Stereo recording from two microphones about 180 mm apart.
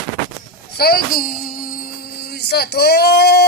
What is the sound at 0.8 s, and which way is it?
Music, 55° left (ahead or behind).